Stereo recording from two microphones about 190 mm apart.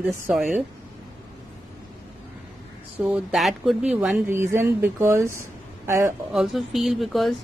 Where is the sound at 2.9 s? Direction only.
10° right (ahead or behind).